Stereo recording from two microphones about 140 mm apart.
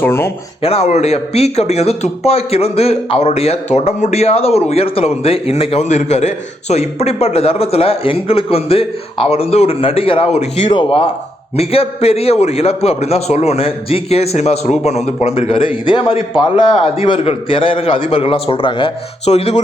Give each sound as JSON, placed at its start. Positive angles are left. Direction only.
{"t": 0.0, "sound": "speech", "side_deg": 20}
{"t": 0.6, "sound": "a man's voice", "side_deg": 50}